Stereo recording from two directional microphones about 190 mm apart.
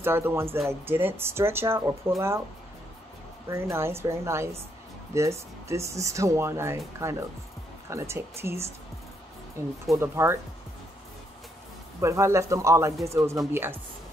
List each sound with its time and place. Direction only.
0.0 s speech: 10° right (ahead or behind)
3.4 s speech: 15° right (ahead or behind)
9.8 s speech: 15° right (ahead or behind)
12.0 s speech: 15° right (ahead or behind)